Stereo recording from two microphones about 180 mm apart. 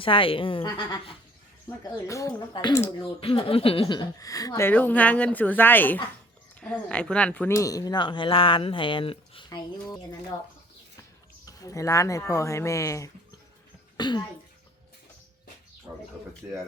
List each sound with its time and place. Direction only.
0.0 s speech: 30° left (ahead or behind)
11.4 s speech: 20° left (ahead or behind)
16.4 s speech: 10° right (ahead or behind)